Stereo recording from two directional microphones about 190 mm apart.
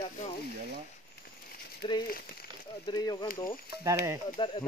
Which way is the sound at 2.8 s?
20° left (ahead or behind).